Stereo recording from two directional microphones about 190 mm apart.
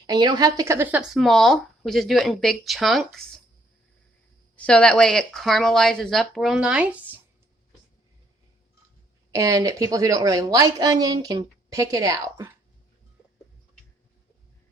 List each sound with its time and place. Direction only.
0.1 s speech: 20° right (ahead or behind); by 3.4 s centre (ahead or behind)
4.5 s speech: 5° left (ahead or behind)
9.3 s a woman's voice: 20° right (ahead or behind)